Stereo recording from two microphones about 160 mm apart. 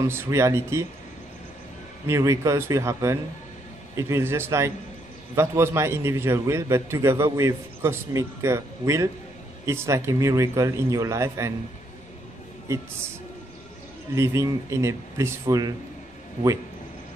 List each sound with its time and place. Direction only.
0.0 s a man's voice: 15° right (ahead or behind)
2.0 s a man's voice: 20° right (ahead or behind)
12.7 s a man's voice: 15° right (ahead or behind)
14.1 s a man's voice: 15° right (ahead or behind)